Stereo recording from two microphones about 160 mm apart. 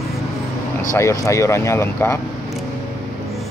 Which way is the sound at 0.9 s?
15° left (ahead or behind).